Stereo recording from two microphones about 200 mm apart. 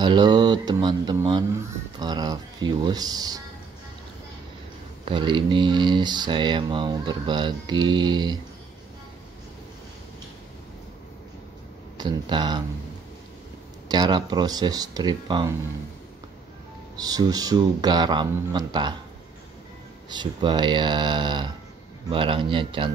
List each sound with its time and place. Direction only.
0.0 s speech: 20° right (ahead or behind)
5.0 s speech: 25° right (ahead or behind)
12.0 s speech: 20° right (ahead or behind)
13.8 s speech: 20° right (ahead or behind)
17.0 s speech: 20° right (ahead or behind)
20.1 s speech: 20° right (ahead or behind)